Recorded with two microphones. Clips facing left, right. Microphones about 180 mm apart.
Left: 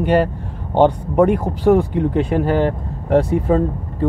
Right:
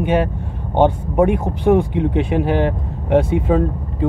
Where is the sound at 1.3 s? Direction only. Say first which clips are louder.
Left 1 dB; 15° right (ahead or behind).